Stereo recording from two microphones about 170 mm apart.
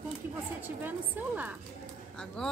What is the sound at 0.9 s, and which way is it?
Speech, 10° right (ahead or behind).